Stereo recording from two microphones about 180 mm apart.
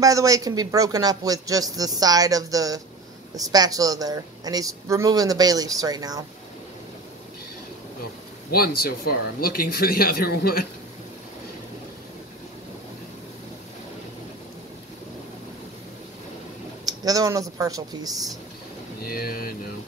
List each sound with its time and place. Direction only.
0.0 s speech: 20° right (ahead or behind)
8.5 s speech: 55° left (ahead or behind)
16.8 s speech: 20° right (ahead or behind)
19.0 s speech: 55° left (ahead or behind)